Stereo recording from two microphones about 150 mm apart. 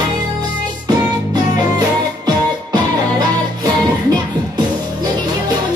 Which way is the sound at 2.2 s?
30° right (ahead or behind).